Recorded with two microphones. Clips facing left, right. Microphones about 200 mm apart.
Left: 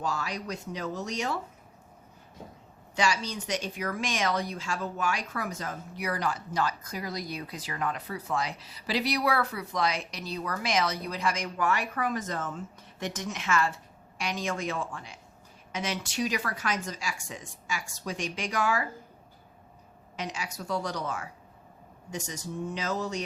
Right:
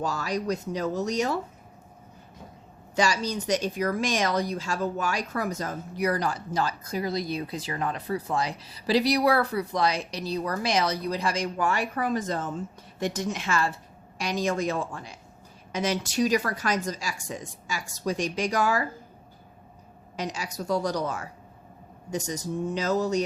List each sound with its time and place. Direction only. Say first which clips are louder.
0.0 s speech: right 5 dB; 40° right (ahead or behind)
2.9 s speech: right 4 dB; 40° right (ahead or behind)
20.1 s speech: right 4 dB; 40° right (ahead or behind)